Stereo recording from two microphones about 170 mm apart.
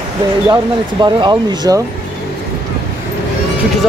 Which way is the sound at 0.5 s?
25° right (ahead or behind).